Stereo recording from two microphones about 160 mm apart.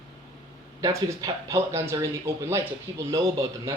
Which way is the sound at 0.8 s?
25° right (ahead or behind).